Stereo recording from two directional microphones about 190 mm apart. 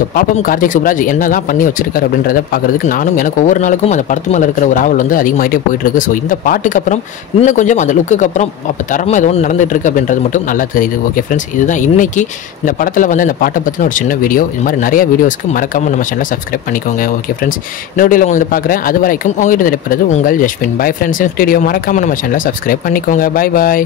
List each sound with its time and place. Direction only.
0.1 s speech: 45° left (ahead or behind)